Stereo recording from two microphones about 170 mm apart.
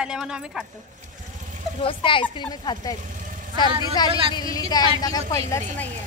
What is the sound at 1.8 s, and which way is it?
A woman's voice, 30° left (ahead or behind).